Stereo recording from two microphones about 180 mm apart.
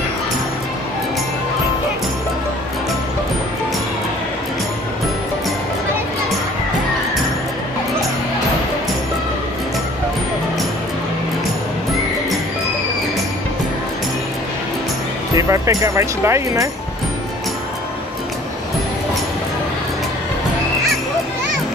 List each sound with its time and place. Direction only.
15.3 s speech: 20° right (ahead or behind)